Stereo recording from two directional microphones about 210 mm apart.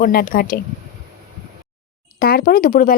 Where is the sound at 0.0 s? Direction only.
40° left (ahead or behind).